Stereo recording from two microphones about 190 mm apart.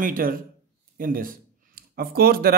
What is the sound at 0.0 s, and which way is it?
A man's voice, 45° right (ahead or behind).